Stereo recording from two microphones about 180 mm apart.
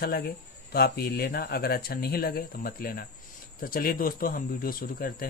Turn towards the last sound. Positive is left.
turn(degrees=55)  # may be behind; listen again after turning